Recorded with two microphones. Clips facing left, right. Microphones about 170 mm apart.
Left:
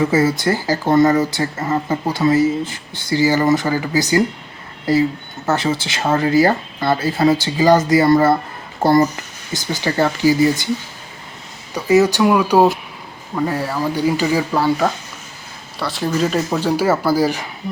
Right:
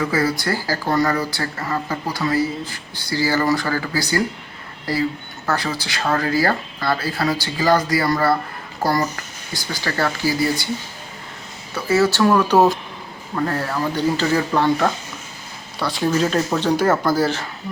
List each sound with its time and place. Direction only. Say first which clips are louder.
0.0 s speech: left 5 dB; 25° left (ahead or behind)
11.7 s speech: left 4 dB; 15° left (ahead or behind)